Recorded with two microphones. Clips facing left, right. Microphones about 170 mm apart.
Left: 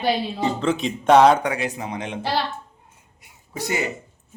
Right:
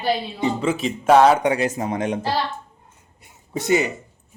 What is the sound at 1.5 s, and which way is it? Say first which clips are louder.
Speech: right 5 dB; 45° right (ahead or behind).